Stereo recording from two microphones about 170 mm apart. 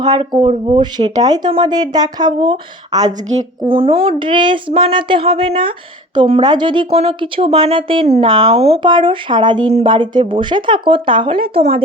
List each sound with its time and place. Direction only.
0.0 s speech: 25° right (ahead or behind)
3.7 s speech: 35° right (ahead or behind)